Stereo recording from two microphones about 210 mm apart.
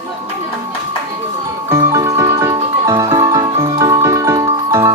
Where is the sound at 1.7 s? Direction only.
15° right (ahead or behind).